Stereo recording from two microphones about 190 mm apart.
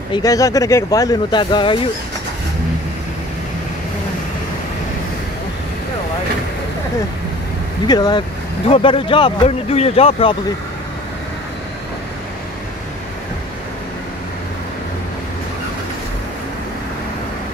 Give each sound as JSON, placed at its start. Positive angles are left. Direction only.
{"t": 0.1, "sound": "speech", "side_deg": 20}
{"t": 7.8, "sound": "speech", "side_deg": 20}